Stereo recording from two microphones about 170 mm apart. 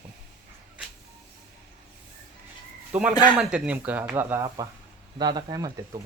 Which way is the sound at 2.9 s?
10° right (ahead or behind).